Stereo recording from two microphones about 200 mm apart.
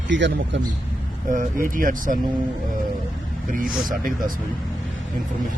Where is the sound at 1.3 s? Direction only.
45° right (ahead or behind).